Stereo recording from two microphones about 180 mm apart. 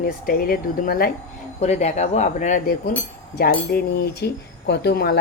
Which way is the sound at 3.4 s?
55° left (ahead or behind).